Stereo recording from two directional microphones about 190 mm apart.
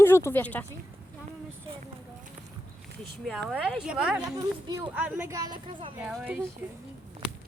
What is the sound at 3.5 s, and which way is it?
Speech, centre (ahead or behind).